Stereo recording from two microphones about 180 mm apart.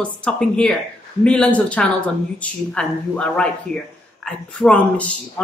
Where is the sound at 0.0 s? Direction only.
5° left (ahead or behind).